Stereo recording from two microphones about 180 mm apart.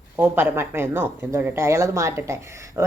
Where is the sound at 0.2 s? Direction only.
10° right (ahead or behind).